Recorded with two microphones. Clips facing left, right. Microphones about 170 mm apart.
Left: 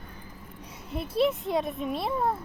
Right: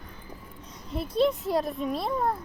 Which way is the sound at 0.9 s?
5° left (ahead or behind).